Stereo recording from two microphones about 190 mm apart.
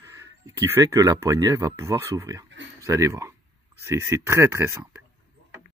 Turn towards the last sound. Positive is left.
turn(degrees=-15)  # may be behind; listen again after turning